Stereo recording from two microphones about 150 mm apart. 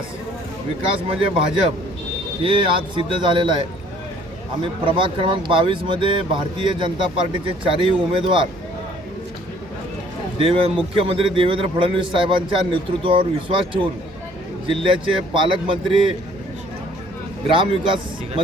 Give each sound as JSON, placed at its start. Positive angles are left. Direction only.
{"t": 1.0, "sound": "a man's voice", "side_deg": -40}
{"t": 10.3, "sound": "a man's voice", "side_deg": -35}
{"t": 17.5, "sound": "a man's voice", "side_deg": -35}